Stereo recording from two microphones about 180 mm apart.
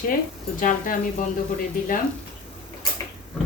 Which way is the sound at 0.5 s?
45° left (ahead or behind).